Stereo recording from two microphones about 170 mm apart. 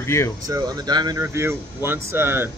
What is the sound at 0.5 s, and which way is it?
Speech, 20° right (ahead or behind).